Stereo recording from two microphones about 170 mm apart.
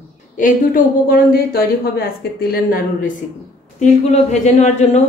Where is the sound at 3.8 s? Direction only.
45° left (ahead or behind).